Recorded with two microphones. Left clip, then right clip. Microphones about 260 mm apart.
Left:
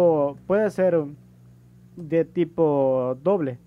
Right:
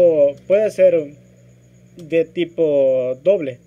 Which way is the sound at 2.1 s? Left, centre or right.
Left.